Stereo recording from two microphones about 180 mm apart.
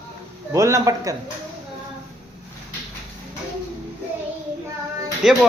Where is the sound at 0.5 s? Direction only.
15° right (ahead or behind).